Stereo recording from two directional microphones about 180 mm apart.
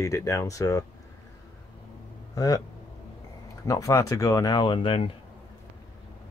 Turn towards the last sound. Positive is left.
turn(degrees=30)  # may be behind; listen again after turning